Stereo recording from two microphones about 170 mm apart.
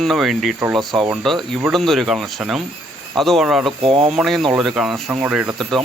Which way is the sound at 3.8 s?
35° right (ahead or behind).